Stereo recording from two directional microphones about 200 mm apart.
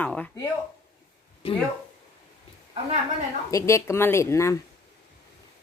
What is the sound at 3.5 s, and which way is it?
A woman's voice, 15° left (ahead or behind).